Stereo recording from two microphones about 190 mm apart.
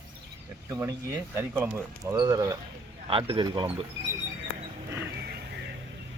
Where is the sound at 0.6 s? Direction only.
15° right (ahead or behind).